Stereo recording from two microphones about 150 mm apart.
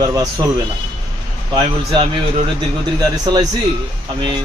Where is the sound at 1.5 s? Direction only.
40° right (ahead or behind).